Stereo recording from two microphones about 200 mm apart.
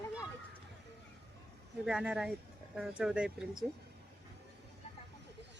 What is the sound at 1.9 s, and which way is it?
A woman's voice, 5° right (ahead or behind).